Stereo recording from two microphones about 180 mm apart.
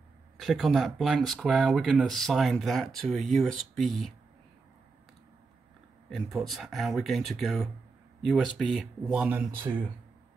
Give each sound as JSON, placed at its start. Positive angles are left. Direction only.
{"t": 0.4, "sound": "speech", "side_deg": 0}
{"t": 6.0, "sound": "speech", "side_deg": 0}
{"t": 9.6, "sound": "speech", "side_deg": -25}